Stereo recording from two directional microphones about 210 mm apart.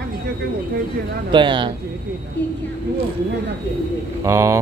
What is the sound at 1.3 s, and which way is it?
Speech, 20° right (ahead or behind).